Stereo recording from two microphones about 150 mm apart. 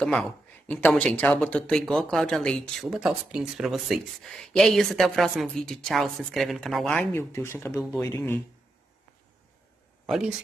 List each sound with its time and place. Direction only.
0.0 s speech: 5° left (ahead or behind)
7.1 s speech: 15° left (ahead or behind)
10.0 s speech: centre (ahead or behind)